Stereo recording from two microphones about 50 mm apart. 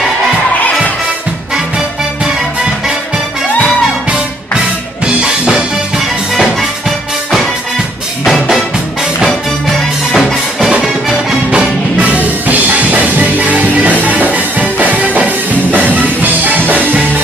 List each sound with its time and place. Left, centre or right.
5.0 s music: centre
5.9 s music: centre
8.2 s music: centre
11.5 s music: right